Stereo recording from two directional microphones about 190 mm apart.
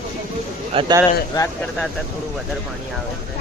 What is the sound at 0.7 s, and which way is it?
Speech, 30° right (ahead or behind).